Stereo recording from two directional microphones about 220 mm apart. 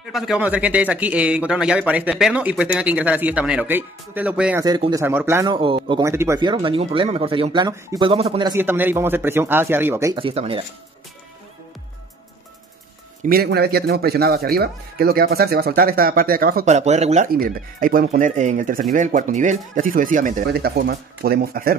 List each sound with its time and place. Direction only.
0.1 s speech: centre (ahead or behind)
4.6 s speech: 20° right (ahead or behind)
8.1 s speech: 25° right (ahead or behind)
8.5 s speech: 10° right (ahead or behind)
10.1 s speech: 25° right (ahead or behind)
13.2 s speech: 45° right (ahead or behind)